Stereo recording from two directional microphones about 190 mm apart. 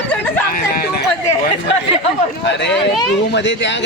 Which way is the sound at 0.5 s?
50° left (ahead or behind).